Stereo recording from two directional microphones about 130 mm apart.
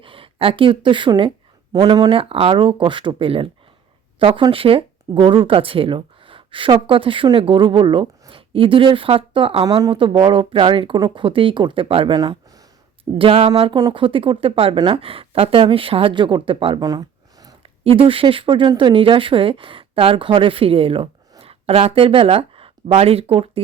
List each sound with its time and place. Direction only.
0.0 s speech: 40° right (ahead or behind)
12.1 s a sound: 30° right (ahead or behind)
13.1 s speech: 45° right (ahead or behind)
13.7 s speech: 30° right (ahead or behind)
14.0 s speech: 45° right (ahead or behind)
16.8 s a sound: 30° right (ahead or behind)
17.6 s a woman's voice: 45° right (ahead or behind)